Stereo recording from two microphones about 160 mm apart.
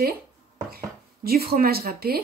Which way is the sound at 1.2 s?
70° right (ahead or behind).